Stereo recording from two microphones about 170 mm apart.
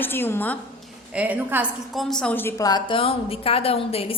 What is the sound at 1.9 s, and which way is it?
A woman's voice, centre (ahead or behind).